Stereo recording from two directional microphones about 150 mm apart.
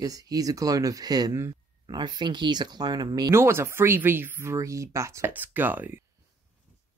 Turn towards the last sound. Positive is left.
turn(degrees=-10)  # may be behind; listen again after turning